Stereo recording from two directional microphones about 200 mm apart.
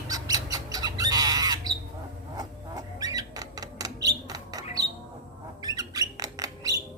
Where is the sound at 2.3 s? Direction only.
20° right (ahead or behind).